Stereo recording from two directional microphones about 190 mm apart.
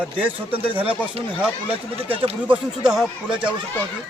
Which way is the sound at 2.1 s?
30° right (ahead or behind).